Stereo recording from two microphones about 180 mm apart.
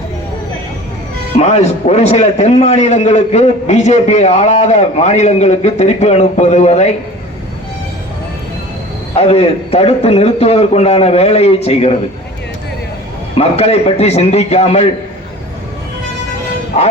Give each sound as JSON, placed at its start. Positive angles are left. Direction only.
{"t": 1.4, "sound": "a man's voice", "side_deg": 35}
{"t": 9.1, "sound": "a man's voice", "side_deg": 35}
{"t": 13.3, "sound": "a man's voice", "side_deg": 35}
{"t": 16.7, "sound": "a man's voice", "side_deg": 35}